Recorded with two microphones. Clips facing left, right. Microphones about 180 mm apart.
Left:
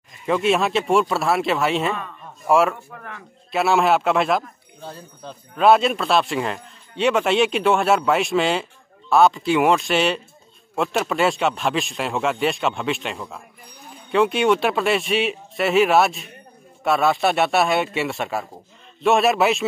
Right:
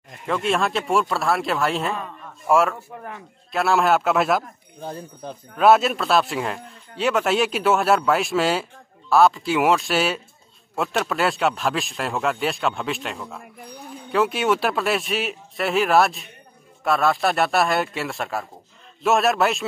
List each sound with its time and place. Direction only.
0.3 s speech: centre (ahead or behind)
2.9 s speech: 25° right (ahead or behind)
3.5 s speech: centre (ahead or behind)
4.8 s speech: 15° right (ahead or behind)
5.6 s speech: 5° right (ahead or behind)